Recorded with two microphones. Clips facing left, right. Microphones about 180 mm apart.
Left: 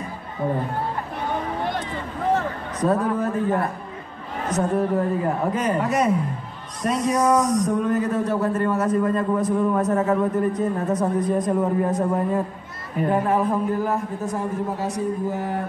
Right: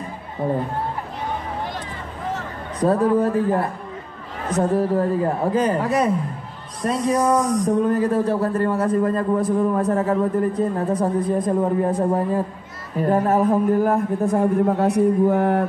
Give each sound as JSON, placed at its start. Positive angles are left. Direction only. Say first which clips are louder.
{"t": 2.8, "sound": "a man's voice", "louder": "right 4 dB", "side_deg": -30}
{"t": 13.1, "sound": "a man's voice", "louder": "right 4 dB", "side_deg": -45}